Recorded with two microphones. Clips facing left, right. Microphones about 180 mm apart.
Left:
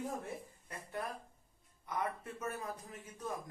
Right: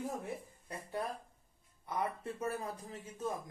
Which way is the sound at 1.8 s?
30° right (ahead or behind).